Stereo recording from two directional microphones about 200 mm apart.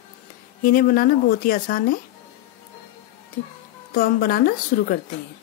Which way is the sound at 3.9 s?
45° left (ahead or behind).